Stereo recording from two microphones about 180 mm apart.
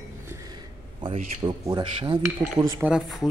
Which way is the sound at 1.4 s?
25° right (ahead or behind).